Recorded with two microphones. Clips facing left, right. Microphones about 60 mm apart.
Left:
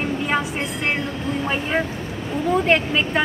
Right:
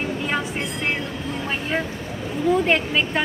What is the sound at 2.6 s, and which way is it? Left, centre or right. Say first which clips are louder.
Speech: left 2 dB; centre.